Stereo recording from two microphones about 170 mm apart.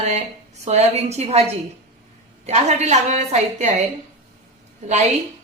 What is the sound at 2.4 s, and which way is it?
A woman's voice, 40° right (ahead or behind).